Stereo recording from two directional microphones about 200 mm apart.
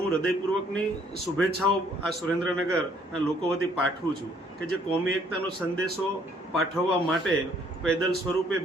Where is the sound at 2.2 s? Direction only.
5° left (ahead or behind).